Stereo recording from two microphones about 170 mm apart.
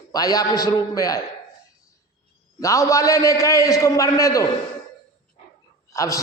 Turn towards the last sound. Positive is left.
turn(degrees=20)  # may be behind; listen again after turning